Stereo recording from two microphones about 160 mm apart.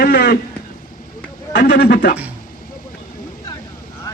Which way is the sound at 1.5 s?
85° left.